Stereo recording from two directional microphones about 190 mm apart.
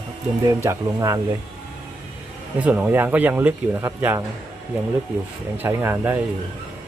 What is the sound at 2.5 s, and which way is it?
Speech, 5° right (ahead or behind).